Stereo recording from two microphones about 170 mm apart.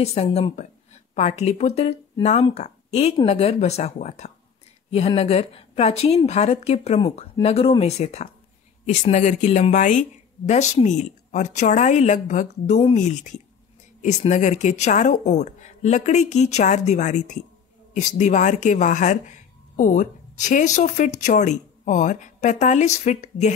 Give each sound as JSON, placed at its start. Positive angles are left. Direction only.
{"t": 0.0, "sound": "speech", "side_deg": 40}